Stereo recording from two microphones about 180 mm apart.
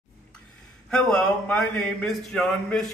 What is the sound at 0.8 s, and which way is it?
A man's voice, 5° left (ahead or behind).